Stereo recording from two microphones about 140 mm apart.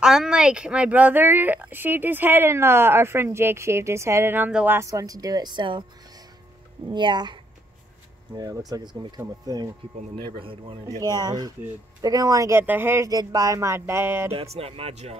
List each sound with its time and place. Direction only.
0.0 s a woman's voice: 5° right (ahead or behind)
4.7 s speech: 20° right (ahead or behind)
8.4 s speech: 25° right (ahead or behind)
10.1 s speech: 35° right (ahead or behind)
11.0 s speech: 30° right (ahead or behind)
14.3 s speech: 45° right (ahead or behind)